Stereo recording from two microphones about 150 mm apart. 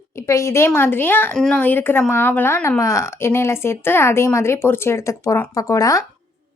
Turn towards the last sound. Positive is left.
turn(degrees=20)  # may be behind; listen again after turning